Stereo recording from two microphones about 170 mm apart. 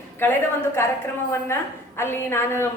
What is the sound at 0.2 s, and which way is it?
Speech, 10° left (ahead or behind).